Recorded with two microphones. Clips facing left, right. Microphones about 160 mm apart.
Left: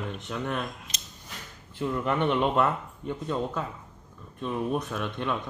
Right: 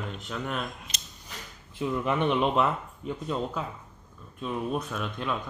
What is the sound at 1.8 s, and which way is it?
Speech, 10° right (ahead or behind).